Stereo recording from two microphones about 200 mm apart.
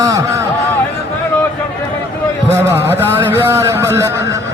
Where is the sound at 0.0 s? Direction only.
15° right (ahead or behind).